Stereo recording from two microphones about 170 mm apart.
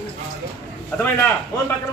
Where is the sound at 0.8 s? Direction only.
15° left (ahead or behind).